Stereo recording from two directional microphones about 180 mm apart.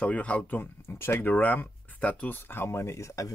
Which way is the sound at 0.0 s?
5° left (ahead or behind).